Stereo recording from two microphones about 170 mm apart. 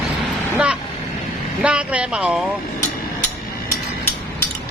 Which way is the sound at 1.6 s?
5° right (ahead or behind).